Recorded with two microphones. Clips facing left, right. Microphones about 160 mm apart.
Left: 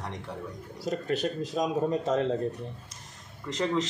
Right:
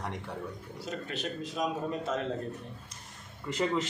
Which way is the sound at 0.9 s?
40° left (ahead or behind).